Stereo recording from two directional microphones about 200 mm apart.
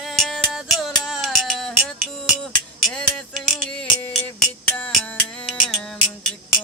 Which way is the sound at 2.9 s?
5° left (ahead or behind).